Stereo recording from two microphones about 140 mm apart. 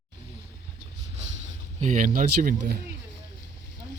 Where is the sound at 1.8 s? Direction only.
70° right (ahead or behind); by 2.7 s 90° right.